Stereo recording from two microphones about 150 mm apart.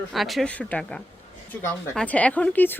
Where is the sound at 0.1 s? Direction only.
Centre (ahead or behind).